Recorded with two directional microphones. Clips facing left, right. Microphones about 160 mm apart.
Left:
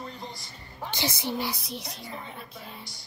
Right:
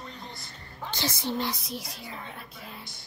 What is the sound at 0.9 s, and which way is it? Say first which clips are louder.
Speech: even; 15° left (ahead or behind).